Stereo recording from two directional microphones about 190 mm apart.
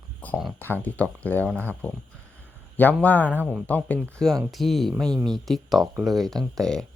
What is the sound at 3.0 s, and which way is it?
Speech, 10° left (ahead or behind).